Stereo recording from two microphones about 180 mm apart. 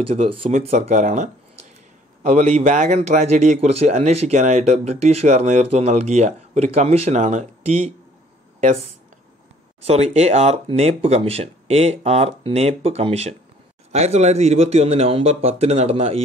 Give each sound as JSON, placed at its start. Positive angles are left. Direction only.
{"t": 0.1, "sound": "speech", "side_deg": -35}
{"t": 9.8, "sound": "speech", "side_deg": -35}